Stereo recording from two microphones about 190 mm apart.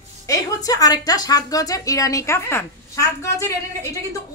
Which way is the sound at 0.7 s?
20° left (ahead or behind).